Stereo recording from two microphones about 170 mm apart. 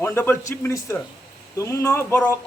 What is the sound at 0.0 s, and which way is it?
A man's voice, 15° left (ahead or behind).